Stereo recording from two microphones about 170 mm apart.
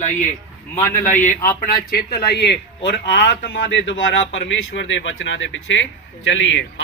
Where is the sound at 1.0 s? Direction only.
45° left (ahead or behind).